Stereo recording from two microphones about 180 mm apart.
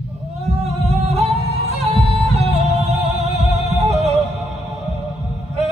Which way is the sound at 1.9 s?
35° right (ahead or behind).